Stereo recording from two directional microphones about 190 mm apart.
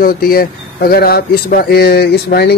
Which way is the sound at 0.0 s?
50° left (ahead or behind).